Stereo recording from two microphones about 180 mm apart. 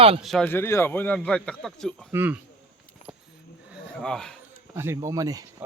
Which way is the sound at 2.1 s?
10° right (ahead or behind).